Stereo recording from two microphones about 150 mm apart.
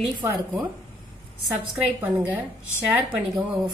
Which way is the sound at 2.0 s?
15° right (ahead or behind).